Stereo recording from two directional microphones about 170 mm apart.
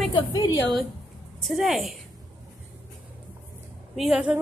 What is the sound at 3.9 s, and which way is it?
Speech, 5° right (ahead or behind).